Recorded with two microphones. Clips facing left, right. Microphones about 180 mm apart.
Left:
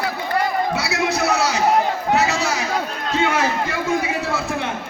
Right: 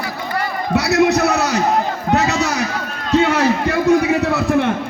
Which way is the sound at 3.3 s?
65° right (ahead or behind).